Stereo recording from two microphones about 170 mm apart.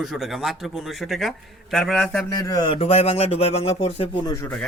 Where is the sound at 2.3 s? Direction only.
25° left (ahead or behind).